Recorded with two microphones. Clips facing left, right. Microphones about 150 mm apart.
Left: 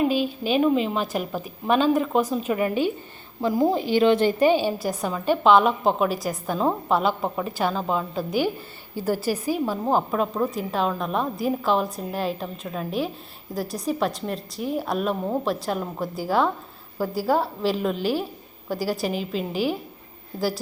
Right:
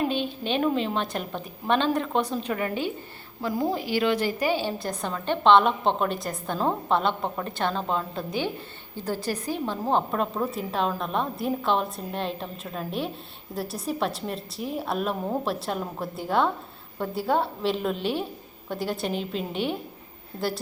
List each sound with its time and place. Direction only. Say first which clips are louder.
0.0 s a woman's voice: left 4 dB; 5° left (ahead or behind)
2.5 s a woman's voice: left 5 dB; 15° left (ahead or behind)
4.8 s a woman's voice: left 4 dB; 5° left (ahead or behind)